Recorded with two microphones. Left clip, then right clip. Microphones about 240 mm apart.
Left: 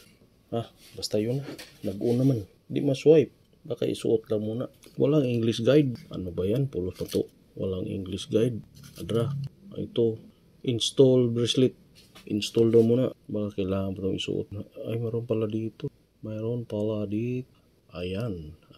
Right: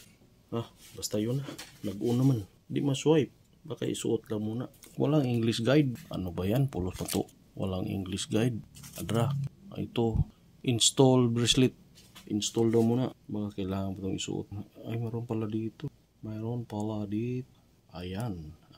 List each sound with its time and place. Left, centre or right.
0.5 s speech: centre
12.3 s speech: centre